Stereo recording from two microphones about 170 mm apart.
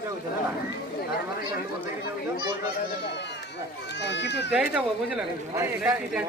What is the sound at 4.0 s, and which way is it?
Speech, 90° left.